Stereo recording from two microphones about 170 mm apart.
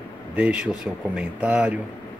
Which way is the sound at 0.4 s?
5° right (ahead or behind).